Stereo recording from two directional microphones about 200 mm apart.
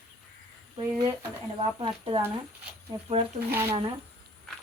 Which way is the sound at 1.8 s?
25° right (ahead or behind).